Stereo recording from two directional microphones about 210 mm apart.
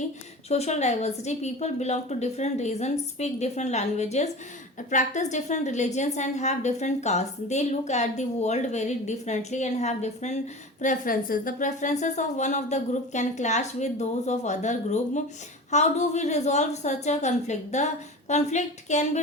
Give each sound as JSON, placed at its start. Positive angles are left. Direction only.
{"t": 0.4, "sound": "a woman's voice", "side_deg": 30}